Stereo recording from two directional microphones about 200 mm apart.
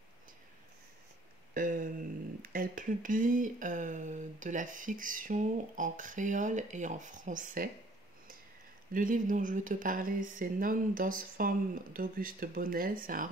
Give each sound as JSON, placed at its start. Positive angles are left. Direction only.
{"t": 1.5, "sound": "a sound", "side_deg": -45}
{"t": 2.5, "sound": "speech", "side_deg": -45}
{"t": 8.9, "sound": "speech", "side_deg": -40}